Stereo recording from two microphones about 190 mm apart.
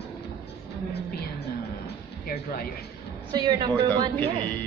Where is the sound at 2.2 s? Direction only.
50° left (ahead or behind).